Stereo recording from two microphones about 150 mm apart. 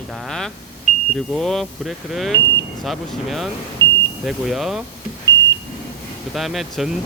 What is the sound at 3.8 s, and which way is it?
Vehicle, 25° right (ahead or behind).